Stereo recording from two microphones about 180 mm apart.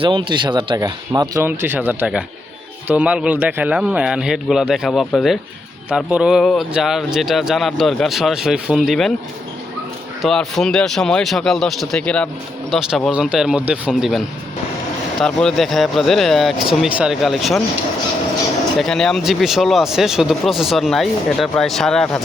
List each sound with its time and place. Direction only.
0.0 s speech: 25° right (ahead or behind); by 9.1 s centre (ahead or behind)
10.2 s speech: centre (ahead or behind)
15.2 s speech: 5° left (ahead or behind)
18.8 s speech: 5° left (ahead or behind)